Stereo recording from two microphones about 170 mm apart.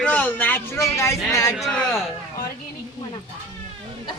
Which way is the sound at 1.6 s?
Centre (ahead or behind).